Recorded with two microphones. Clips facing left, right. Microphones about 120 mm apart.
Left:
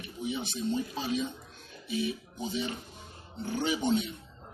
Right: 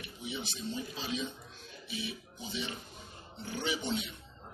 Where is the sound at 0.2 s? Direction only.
50° left (ahead or behind).